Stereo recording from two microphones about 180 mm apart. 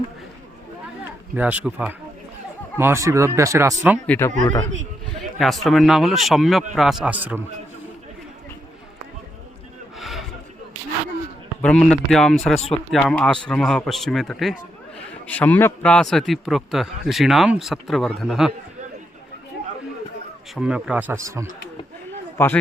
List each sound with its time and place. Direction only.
1.4 s speech: 10° right (ahead or behind)
4.0 s speech: 10° left (ahead or behind)
5.4 s a man's voice: centre (ahead or behind)
10.0 s a sound: centre (ahead or behind)
11.6 s a man's voice: 5° left (ahead or behind)
20.6 s speech: 5° right (ahead or behind)